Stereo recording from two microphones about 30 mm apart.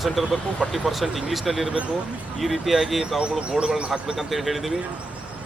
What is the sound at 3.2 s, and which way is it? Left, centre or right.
Speech, right.